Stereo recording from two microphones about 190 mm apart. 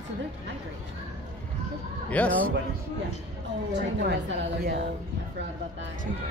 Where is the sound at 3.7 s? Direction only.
65° right (ahead or behind).